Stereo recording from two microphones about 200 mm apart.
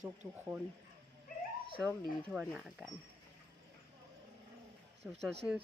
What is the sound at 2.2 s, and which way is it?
Speech, centre (ahead or behind).